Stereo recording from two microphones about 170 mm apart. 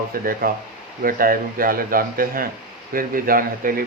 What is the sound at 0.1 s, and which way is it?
Speech, 60° right (ahead or behind).